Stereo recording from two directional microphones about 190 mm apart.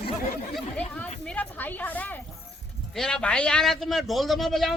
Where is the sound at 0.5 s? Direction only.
5° left (ahead or behind).